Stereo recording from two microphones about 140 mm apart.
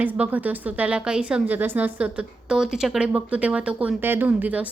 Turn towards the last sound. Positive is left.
turn(degrees=-10)  # may be behind; listen again after turning